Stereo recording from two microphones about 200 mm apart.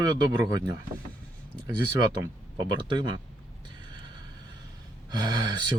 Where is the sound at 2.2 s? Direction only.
20° right (ahead or behind).